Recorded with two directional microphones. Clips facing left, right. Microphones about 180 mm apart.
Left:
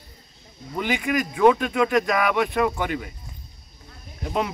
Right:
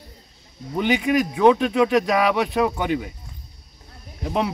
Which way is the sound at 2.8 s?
20° right (ahead or behind).